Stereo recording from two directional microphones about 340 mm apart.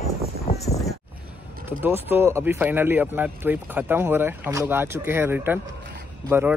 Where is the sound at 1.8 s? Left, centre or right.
Centre.